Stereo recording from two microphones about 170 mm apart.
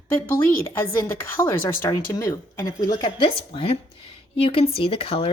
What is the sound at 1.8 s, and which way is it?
A woman's voice, 15° left (ahead or behind).